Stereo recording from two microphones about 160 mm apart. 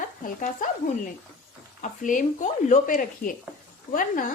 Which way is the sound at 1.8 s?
55° left (ahead or behind).